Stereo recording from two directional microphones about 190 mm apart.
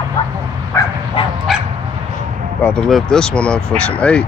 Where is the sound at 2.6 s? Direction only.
5° left (ahead or behind).